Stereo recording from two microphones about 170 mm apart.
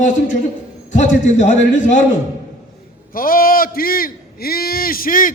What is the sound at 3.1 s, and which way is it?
A man's voice, 55° left (ahead or behind).